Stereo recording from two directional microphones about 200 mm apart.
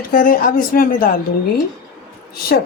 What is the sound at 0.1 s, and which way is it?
Speech, 45° left (ahead or behind).